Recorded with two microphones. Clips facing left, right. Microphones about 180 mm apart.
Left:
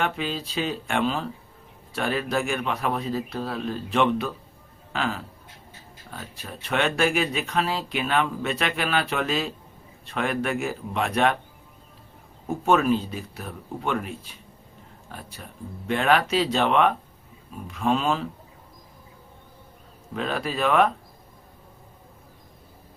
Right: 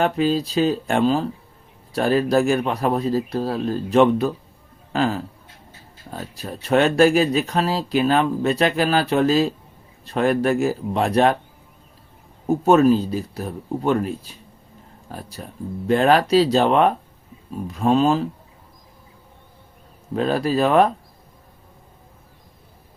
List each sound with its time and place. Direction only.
0.0 s speech: 40° right (ahead or behind)
12.5 s speech: 35° right (ahead or behind)
20.1 s speech: 35° right (ahead or behind)